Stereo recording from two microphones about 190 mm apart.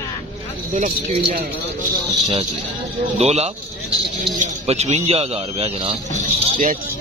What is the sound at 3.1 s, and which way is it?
A man's voice, 35° right (ahead or behind).